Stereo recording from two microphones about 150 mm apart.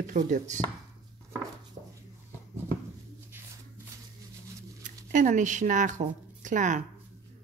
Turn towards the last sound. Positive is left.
turn(degrees=-55)  # may be behind; listen again after turning